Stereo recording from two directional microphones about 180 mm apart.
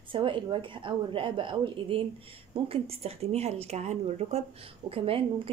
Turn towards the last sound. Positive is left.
turn(degrees=-30)  # may be behind; listen again after turning